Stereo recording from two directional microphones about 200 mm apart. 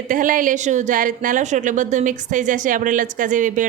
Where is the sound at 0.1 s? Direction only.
40° right (ahead or behind).